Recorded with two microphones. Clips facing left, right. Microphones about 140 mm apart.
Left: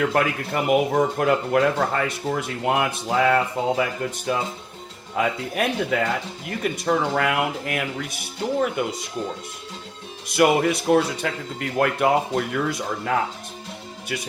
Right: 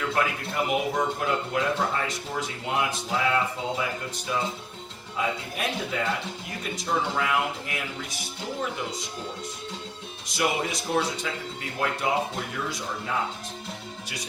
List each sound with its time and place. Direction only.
0.0 s speech: 55° left (ahead or behind)
10.2 s speech: 60° left (ahead or behind)